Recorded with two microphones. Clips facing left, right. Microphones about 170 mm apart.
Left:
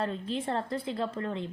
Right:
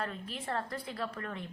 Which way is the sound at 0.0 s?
25° left (ahead or behind).